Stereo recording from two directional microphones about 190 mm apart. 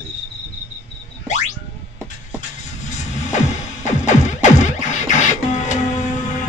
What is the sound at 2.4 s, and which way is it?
Music, 40° left (ahead or behind).